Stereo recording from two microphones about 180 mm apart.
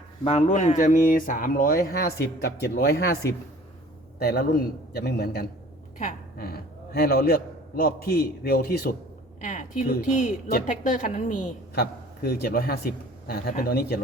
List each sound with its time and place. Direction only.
0.3 s speech: 40° left (ahead or behind); by 3.2 s 60° left (ahead or behind)
4.2 s a man's voice: 60° left (ahead or behind)
9.4 s speech: 45° left (ahead or behind)
11.7 s a man's voice: 60° left (ahead or behind)